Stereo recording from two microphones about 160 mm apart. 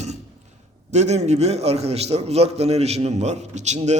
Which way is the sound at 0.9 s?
45° right (ahead or behind).